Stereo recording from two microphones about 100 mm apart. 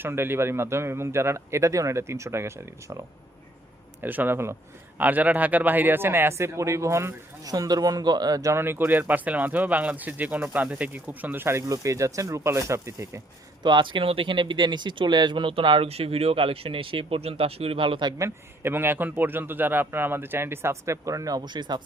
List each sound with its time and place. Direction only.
0.0 s speech: 25° right (ahead or behind)
4.0 s speech: 20° right (ahead or behind)
7.5 s a man's voice: 40° right (ahead or behind)
8.5 s speech: 20° right (ahead or behind)
13.6 s speech: 50° right (ahead or behind)
15.9 s speech: 80° right; by 18.1 s 60° right (ahead or behind)
18.2 s speech: 20° right (ahead or behind); by 21.8 s 50° right (ahead or behind)